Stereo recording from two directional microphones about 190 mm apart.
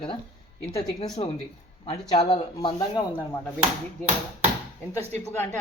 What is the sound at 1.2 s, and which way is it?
Speech, 30° left (ahead or behind).